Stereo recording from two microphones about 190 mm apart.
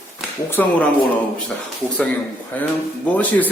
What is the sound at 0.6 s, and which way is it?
Speech, 10° left (ahead or behind).